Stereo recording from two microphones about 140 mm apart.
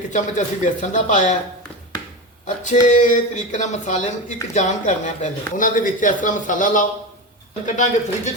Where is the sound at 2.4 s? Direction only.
60° left (ahead or behind).